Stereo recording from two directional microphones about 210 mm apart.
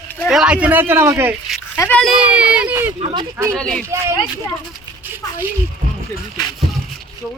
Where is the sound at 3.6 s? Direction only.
5° left (ahead or behind).